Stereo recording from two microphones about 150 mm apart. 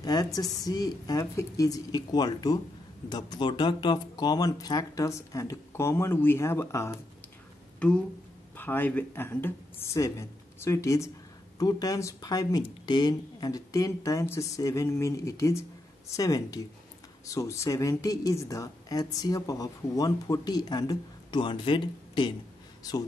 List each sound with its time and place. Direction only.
0.0 s speech: 25° left (ahead or behind)
8.5 s speech: 15° left (ahead or behind)